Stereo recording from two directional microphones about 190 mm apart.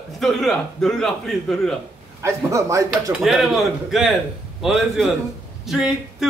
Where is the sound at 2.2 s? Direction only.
15° right (ahead or behind).